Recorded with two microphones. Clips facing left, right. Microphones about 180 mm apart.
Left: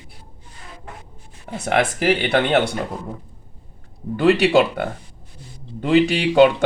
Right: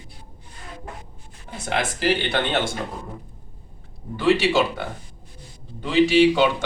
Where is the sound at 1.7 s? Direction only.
60° left (ahead or behind).